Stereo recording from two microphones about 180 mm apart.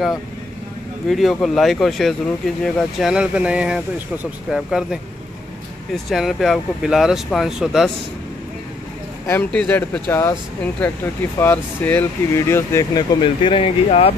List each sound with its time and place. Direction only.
1.0 s speech: centre (ahead or behind)
6.0 s speech: centre (ahead or behind)
9.3 s speech: 5° left (ahead or behind)
13.2 s speech: 25° left (ahead or behind)